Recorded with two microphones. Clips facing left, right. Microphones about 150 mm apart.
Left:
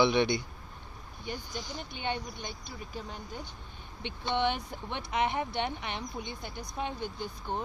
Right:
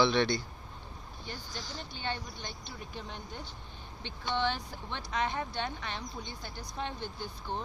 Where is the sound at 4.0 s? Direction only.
20° left (ahead or behind).